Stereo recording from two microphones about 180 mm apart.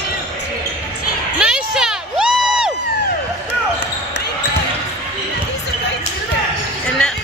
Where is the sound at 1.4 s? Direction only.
5° right (ahead or behind).